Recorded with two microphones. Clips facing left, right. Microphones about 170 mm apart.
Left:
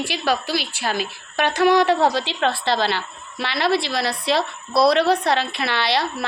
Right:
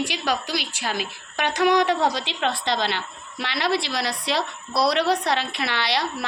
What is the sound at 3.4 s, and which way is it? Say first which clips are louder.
A woman's voice: left 3 dB; 15° right (ahead or behind).